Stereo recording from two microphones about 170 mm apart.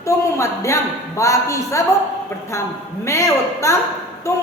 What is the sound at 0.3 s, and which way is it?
A woman's voice, 15° left (ahead or behind).